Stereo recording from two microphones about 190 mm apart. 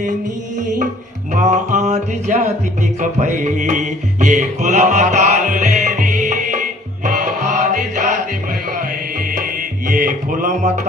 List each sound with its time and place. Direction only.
1.3 s music: 40° right (ahead or behind)
9.8 s music: 45° right (ahead or behind)